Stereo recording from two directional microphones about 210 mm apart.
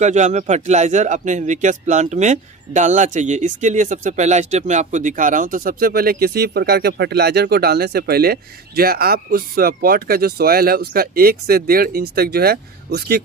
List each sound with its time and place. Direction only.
0.0 s speech: 35° right (ahead or behind)